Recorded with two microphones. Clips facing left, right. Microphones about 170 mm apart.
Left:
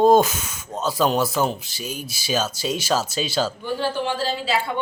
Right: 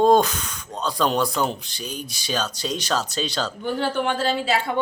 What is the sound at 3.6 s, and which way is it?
Speech, 60° right (ahead or behind).